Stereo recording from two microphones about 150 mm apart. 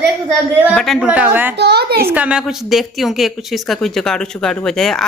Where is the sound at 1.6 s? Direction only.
90° right.